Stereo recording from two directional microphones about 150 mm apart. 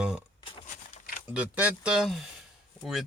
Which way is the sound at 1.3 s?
10° right (ahead or behind).